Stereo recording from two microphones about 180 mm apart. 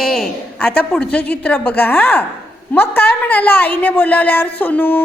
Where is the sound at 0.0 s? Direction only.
Centre (ahead or behind).